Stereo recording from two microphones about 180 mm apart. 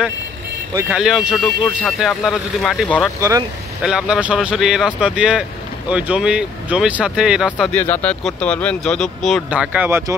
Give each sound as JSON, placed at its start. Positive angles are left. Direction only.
{"t": 0.9, "sound": "speech", "side_deg": -5}
{"t": 3.2, "sound": "speech", "side_deg": -15}
{"t": 3.8, "sound": "speech", "side_deg": -5}